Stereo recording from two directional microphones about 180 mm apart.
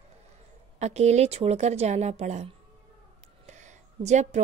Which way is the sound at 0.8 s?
40° right (ahead or behind).